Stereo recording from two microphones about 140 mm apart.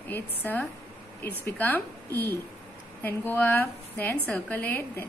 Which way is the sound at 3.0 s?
15° left (ahead or behind).